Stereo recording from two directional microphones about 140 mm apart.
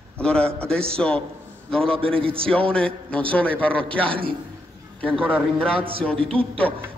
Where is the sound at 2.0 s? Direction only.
40° right (ahead or behind).